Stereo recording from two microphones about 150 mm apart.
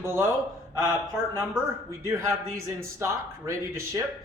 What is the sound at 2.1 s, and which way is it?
A man's voice, 15° right (ahead or behind).